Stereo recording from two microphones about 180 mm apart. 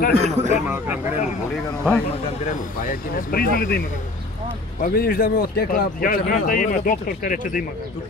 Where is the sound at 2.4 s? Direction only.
50° left (ahead or behind).